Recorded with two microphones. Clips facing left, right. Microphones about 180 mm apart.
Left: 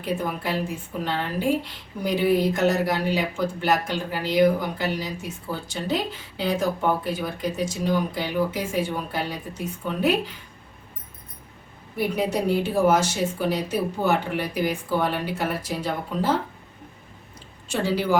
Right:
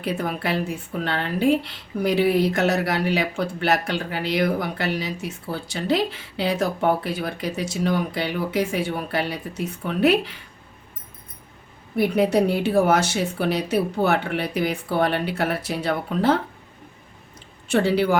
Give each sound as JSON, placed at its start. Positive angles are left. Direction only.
{"t": 0.0, "sound": "speech", "side_deg": -70}
{"t": 11.9, "sound": "speech", "side_deg": -65}
{"t": 17.7, "sound": "speech", "side_deg": -65}